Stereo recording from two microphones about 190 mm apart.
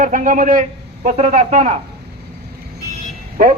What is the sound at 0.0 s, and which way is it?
A man's voice, 45° right (ahead or behind).